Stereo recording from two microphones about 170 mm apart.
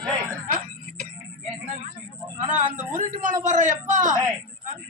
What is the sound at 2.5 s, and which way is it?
A man's voice, 45° right (ahead or behind).